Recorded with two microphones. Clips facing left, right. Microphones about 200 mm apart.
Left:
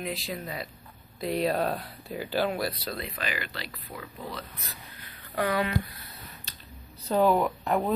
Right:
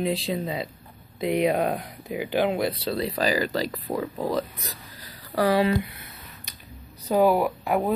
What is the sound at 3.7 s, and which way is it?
Speech, 90° right.